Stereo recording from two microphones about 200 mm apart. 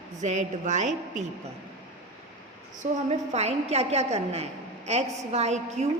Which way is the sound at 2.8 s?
35° right (ahead or behind).